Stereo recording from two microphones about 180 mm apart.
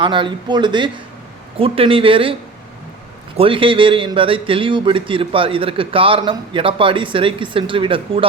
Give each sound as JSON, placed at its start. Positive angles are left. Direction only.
{"t": 0.0, "sound": "a man's voice", "side_deg": -25}
{"t": 3.3, "sound": "a man's voice", "side_deg": -30}